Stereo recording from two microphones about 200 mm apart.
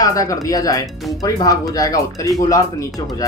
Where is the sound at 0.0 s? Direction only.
15° left (ahead or behind).